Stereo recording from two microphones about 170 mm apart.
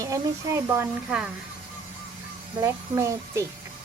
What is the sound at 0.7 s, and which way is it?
Speech, 15° right (ahead or behind).